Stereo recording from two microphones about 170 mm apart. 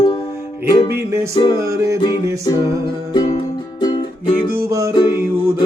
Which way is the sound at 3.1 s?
25° left (ahead or behind).